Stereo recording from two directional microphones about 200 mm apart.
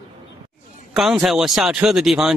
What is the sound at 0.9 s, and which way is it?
Speech, 5° right (ahead or behind).